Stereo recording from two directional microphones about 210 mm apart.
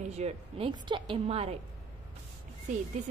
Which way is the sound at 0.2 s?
25° right (ahead or behind).